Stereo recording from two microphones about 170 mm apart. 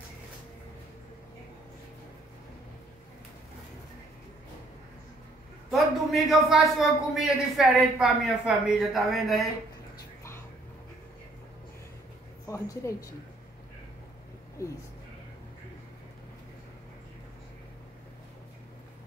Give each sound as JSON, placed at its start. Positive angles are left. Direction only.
{"t": 5.7, "sound": "a man's voice", "side_deg": 0}
{"t": 12.4, "sound": "a woman's voice", "side_deg": 15}
{"t": 14.6, "sound": "speech", "side_deg": 20}